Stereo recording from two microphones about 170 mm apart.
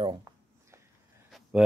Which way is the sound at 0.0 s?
25° right (ahead or behind).